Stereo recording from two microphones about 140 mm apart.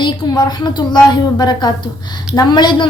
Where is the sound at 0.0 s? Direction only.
30° left (ahead or behind).